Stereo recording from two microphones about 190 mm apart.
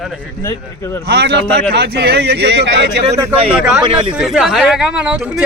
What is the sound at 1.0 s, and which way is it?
Speech, 60° right (ahead or behind).